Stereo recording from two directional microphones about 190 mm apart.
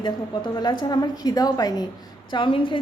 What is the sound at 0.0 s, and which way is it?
A woman's voice, 25° left (ahead or behind).